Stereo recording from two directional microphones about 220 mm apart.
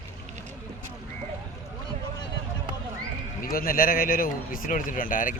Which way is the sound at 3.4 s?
40° left (ahead or behind).